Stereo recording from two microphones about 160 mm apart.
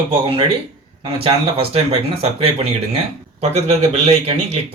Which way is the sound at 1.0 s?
35° right (ahead or behind).